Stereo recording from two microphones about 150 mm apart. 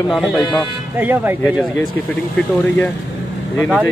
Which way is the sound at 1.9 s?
10° left (ahead or behind).